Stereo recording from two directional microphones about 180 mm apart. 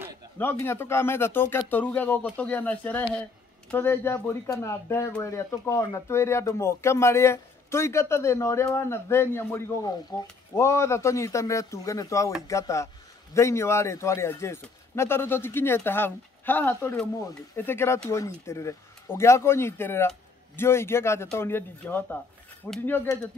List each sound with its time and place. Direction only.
0.4 s speech: 15° left (ahead or behind)